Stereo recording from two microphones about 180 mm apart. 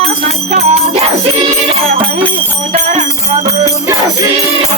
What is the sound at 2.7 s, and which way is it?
Music, 45° right (ahead or behind).